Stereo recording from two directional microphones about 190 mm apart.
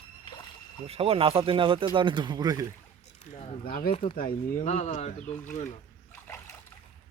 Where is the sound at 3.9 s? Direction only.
25° left (ahead or behind).